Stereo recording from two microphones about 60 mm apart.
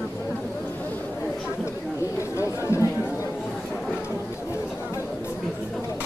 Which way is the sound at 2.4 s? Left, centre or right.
Left.